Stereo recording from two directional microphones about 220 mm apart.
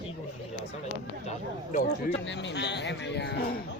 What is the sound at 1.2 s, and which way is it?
Speech, 30° left (ahead or behind).